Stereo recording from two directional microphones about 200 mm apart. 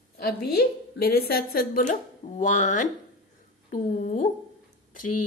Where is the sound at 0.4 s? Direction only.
50° left (ahead or behind).